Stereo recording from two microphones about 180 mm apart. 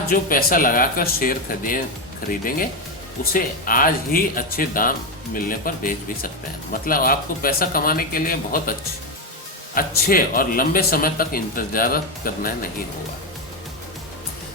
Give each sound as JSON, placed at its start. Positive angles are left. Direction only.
{"t": 0.1, "sound": "speech", "side_deg": 50}
{"t": 9.7, "sound": "speech", "side_deg": 55}